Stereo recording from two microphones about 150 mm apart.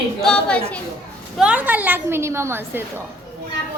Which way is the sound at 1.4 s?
10° right (ahead or behind).